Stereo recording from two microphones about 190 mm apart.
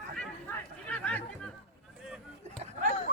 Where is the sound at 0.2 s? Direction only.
10° left (ahead or behind).